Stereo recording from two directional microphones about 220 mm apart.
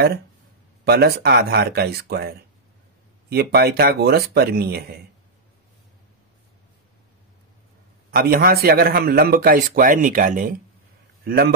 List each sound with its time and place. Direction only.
0.8 s speech: 45° right (ahead or behind)
8.1 s a man's voice: 40° right (ahead or behind)